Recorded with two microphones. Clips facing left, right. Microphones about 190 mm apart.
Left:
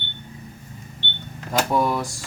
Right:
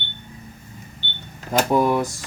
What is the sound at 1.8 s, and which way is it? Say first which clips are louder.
Speech: right 4 dB; 20° right (ahead or behind).